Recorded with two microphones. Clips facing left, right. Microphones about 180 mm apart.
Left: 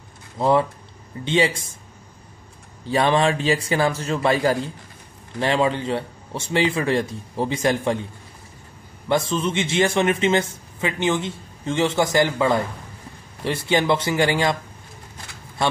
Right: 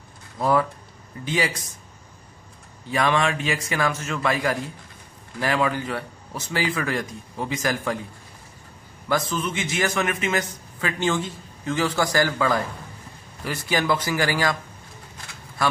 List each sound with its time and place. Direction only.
0.4 s a man's voice: 25° left (ahead or behind)
2.8 s a man's voice: 30° left (ahead or behind)
9.1 s a man's voice: 25° left (ahead or behind)
15.6 s a man's voice: 25° left (ahead or behind)